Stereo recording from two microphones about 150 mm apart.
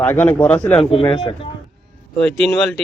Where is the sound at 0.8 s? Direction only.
40° left (ahead or behind).